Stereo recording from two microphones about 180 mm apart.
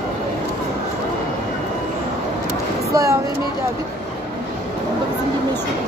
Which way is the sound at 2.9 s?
20° right (ahead or behind).